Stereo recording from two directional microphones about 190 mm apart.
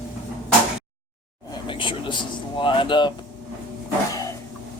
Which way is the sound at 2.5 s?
25° left (ahead or behind).